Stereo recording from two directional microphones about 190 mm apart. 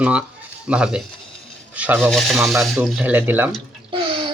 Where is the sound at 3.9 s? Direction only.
25° right (ahead or behind).